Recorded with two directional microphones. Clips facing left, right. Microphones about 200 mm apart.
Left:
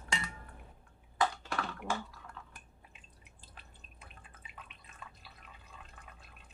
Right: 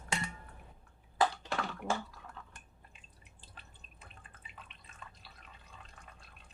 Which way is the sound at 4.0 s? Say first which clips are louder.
Even; 5° left (ahead or behind).